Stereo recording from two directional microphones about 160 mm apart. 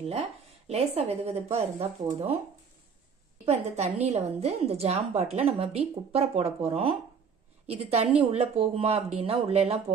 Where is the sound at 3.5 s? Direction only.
45° right (ahead or behind).